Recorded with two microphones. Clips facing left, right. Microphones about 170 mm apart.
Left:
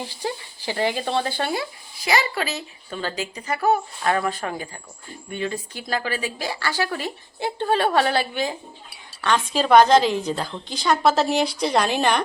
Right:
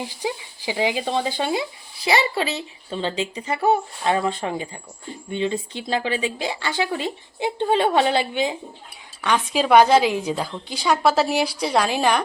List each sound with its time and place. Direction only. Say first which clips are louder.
0.0 s a woman's voice: right 1 dB; 15° right (ahead or behind)